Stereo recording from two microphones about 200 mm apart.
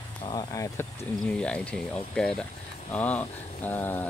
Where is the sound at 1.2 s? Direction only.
5° left (ahead or behind).